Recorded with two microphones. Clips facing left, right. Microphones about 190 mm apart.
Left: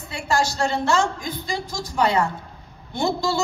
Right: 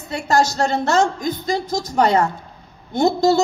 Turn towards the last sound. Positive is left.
turn(degrees=-40)  # may be behind; listen again after turning